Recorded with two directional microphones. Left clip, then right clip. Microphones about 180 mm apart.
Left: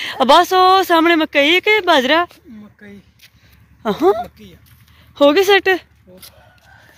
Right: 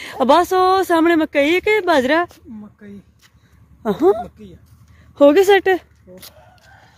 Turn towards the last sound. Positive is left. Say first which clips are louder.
# even
turn(degrees=-15)  # may be behind; listen again after turning